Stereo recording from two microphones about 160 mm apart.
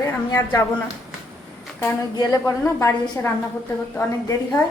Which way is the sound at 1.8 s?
25° left (ahead or behind).